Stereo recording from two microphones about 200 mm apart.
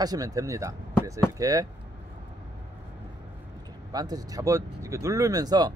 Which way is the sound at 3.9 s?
20° right (ahead or behind).